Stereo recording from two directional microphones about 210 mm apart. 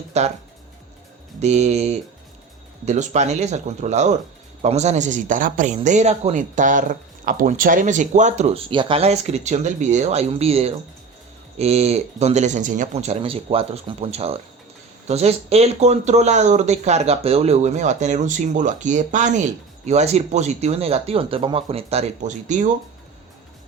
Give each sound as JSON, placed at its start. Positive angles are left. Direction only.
{"t": 0.1, "sound": "speech", "side_deg": -35}
{"t": 1.4, "sound": "speech", "side_deg": -35}